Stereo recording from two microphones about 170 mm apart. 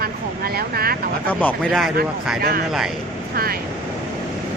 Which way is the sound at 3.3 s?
60° right (ahead or behind).